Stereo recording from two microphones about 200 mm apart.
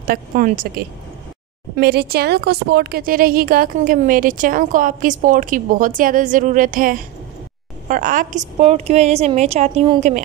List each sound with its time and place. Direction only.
0.0 s a woman's voice: 45° right (ahead or behind)